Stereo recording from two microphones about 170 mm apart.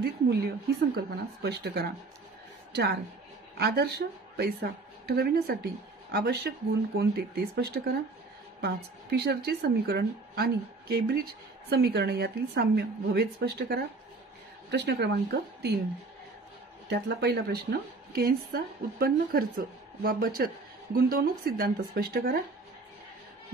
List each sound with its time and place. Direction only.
0.0 s a woman's voice: 65° right (ahead or behind)
14.7 s speech: 85° right
16.9 s a woman's voice: 80° right; by 22.4 s 60° right (ahead or behind)